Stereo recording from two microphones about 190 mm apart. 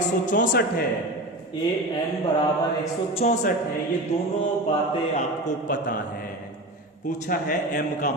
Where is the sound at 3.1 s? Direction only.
40° left (ahead or behind).